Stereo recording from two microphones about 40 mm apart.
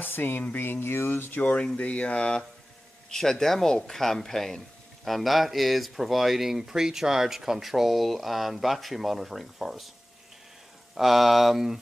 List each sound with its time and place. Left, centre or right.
0.0 s speech: left
0.6 s speech: left
1.4 s speech: left
3.1 s speech: centre
11.0 s speech: centre